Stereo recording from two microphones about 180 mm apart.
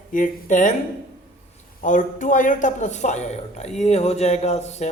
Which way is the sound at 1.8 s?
45° left (ahead or behind).